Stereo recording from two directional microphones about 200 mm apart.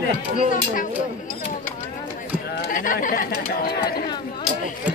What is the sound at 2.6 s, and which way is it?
Speech, 45° left (ahead or behind).